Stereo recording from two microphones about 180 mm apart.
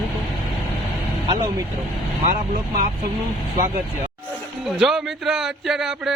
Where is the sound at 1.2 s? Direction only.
20° right (ahead or behind).